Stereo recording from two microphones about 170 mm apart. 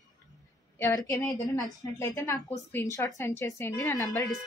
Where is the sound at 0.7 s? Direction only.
15° left (ahead or behind).